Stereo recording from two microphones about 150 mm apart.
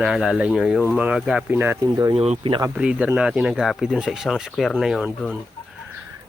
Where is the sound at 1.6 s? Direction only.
20° right (ahead or behind).